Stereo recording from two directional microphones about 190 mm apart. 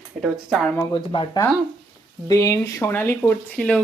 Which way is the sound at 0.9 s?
25° left (ahead or behind).